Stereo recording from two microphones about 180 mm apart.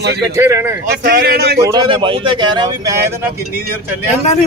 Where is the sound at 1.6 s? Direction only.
25° right (ahead or behind).